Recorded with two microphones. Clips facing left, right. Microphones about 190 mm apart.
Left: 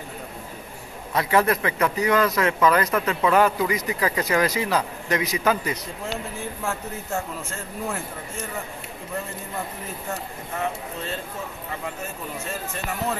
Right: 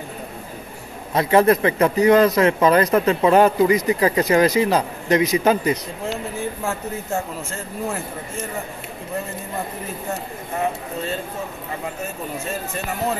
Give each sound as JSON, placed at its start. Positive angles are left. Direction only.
{"t": 1.1, "sound": "speech", "side_deg": -25}